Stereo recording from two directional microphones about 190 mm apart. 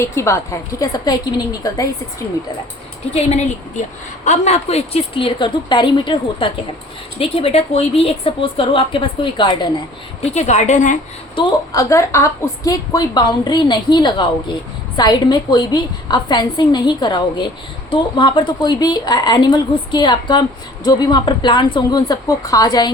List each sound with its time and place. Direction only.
0.0 s a woman's voice: 15° left (ahead or behind)
3.1 s a woman's voice: 35° left (ahead or behind)
10.3 s a woman's voice: 35° left (ahead or behind)
11.3 s a woman's voice: 20° left (ahead or behind)